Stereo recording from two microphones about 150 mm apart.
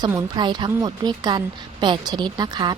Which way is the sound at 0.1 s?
25° right (ahead or behind).